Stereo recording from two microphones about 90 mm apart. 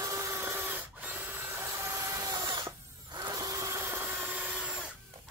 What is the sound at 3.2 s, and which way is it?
Sewing machine, 40° right (ahead or behind).